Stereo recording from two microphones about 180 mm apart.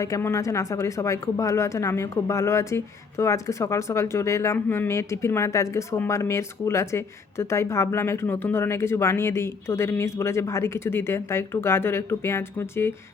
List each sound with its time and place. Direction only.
0.0 s speech: 15° left (ahead or behind)